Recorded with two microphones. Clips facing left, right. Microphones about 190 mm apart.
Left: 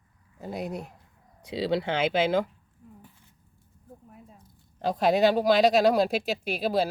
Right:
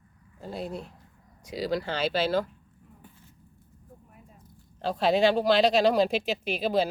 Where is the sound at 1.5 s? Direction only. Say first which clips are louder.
Left 2 dB; 25° left (ahead or behind).